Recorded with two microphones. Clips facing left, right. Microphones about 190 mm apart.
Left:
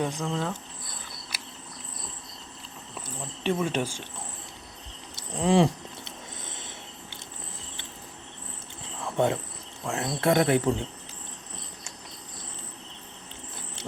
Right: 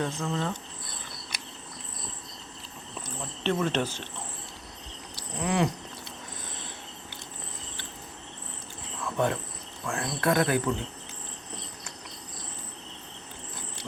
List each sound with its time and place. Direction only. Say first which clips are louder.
0.0 s speech: left 1 dB; 15° left (ahead or behind)
1.3 s cricket: left 1 dB; 5° left (ahead or behind)
3.4 s speech: even; 10° left (ahead or behind)
5.1 s a sound: left 6 dB; 30° left (ahead or behind)
9.0 s cricket: left 2 dB; 25° left (ahead or behind)
9.8 s speech: left 2 dB; 25° left (ahead or behind)